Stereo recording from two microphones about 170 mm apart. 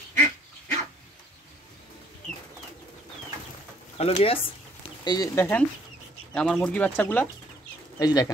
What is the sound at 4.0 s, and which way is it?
Speech, 35° left (ahead or behind).